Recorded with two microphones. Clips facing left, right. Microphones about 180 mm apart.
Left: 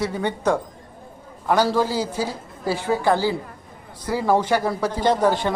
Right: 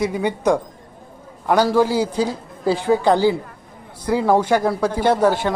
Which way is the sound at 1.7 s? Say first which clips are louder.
Right 4 dB; 15° right (ahead or behind).